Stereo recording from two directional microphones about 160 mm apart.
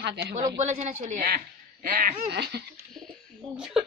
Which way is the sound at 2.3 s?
90° right.